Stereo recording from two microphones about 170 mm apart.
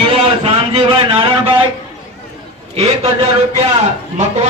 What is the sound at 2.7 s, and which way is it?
Speech, 40° right (ahead or behind).